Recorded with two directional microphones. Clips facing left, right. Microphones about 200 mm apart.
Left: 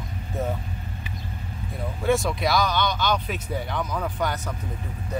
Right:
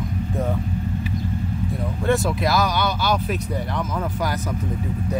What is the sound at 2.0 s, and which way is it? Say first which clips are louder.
Speech: right 2 dB; centre (ahead or behind).